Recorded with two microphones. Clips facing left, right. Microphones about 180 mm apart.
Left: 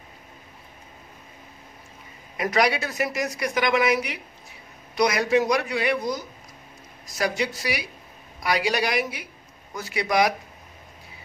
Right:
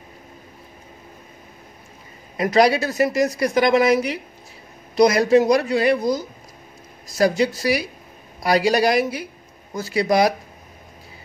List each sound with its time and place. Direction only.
2.3 s speech: 30° right (ahead or behind)